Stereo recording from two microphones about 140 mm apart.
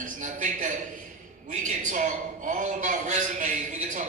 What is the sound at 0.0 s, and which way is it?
A man's voice, 65° right (ahead or behind).